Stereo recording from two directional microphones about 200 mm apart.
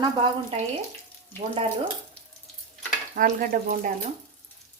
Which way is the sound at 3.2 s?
45° right (ahead or behind).